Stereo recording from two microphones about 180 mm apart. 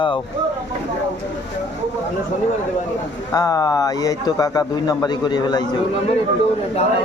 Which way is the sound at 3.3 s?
20° left (ahead or behind).